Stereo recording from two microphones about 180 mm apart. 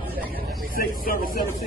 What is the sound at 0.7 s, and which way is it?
Speech, 55° left (ahead or behind).